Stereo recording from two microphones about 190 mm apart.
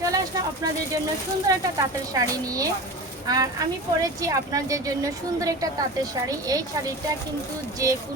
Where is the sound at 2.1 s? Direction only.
20° right (ahead or behind).